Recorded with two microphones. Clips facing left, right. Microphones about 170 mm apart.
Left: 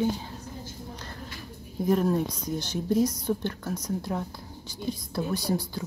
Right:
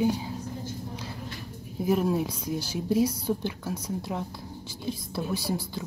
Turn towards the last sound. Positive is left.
turn(degrees=-5)  # may be behind; listen again after turning